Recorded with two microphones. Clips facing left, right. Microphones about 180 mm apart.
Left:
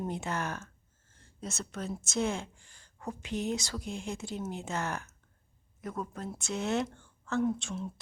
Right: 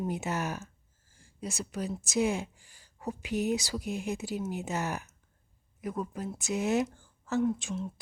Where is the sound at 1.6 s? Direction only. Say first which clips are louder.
Right 3 dB; centre (ahead or behind).